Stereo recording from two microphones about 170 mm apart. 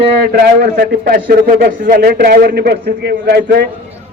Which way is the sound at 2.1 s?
70° right (ahead or behind).